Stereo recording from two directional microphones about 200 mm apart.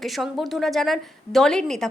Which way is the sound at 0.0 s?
Centre (ahead or behind).